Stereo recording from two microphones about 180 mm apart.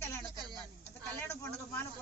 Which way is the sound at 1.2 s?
15° left (ahead or behind).